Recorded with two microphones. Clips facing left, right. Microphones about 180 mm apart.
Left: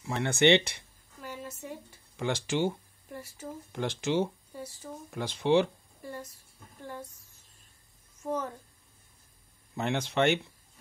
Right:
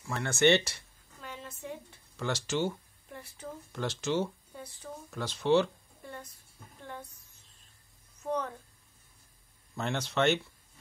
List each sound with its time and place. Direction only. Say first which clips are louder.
0.0 s speech: left 2 dB; 20° left (ahead or behind)
1.2 s a sound: left 2 dB; 10° left (ahead or behind)
2.4 s speech: left 2 dB; 15° left (ahead or behind)
5.1 s a sound: left 1 dB; 15° left (ahead or behind)
8.2 s a child's voice: even; 5° left (ahead or behind)
9.8 s speech: left 2 dB; 15° left (ahead or behind)